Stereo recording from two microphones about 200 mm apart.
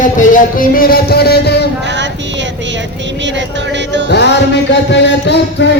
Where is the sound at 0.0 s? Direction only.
40° left (ahead or behind); by 1.7 s 55° left (ahead or behind).